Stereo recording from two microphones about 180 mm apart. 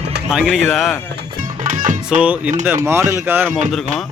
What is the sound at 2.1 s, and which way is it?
Speech, 5° right (ahead or behind).